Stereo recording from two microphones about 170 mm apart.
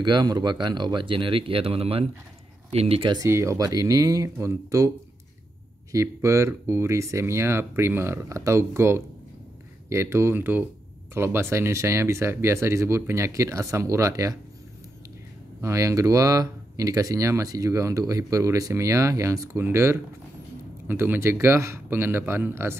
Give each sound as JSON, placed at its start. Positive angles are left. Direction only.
{"t": 0.0, "sound": "speech", "side_deg": -25}
{"t": 3.3, "sound": "speech", "side_deg": -15}
{"t": 15.6, "sound": "speech", "side_deg": -20}